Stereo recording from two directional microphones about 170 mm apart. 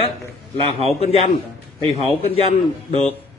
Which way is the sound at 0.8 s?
35° left (ahead or behind).